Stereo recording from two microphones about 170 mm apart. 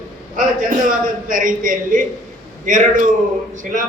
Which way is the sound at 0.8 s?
55° right (ahead or behind).